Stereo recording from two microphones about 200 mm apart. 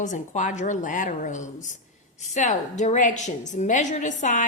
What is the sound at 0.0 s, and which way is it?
A woman's voice, 40° left (ahead or behind).